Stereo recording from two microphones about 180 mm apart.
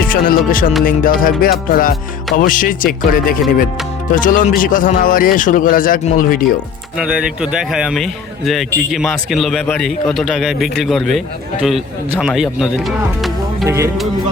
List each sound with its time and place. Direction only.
0.0 s music: 50° left (ahead or behind)
7.0 s a man's voice: 5° right (ahead or behind)
12.2 s a man's voice: centre (ahead or behind)
13.7 s speech: 15° right (ahead or behind)